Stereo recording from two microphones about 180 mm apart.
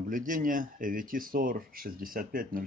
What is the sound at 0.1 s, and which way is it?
Speech, 50° right (ahead or behind).